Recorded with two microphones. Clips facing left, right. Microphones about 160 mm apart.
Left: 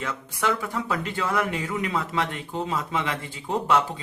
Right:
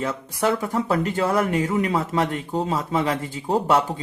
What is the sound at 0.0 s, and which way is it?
Speech, 35° right (ahead or behind).